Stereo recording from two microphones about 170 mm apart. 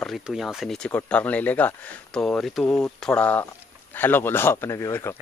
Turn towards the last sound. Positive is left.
turn(degrees=15)  # may be behind; listen again after turning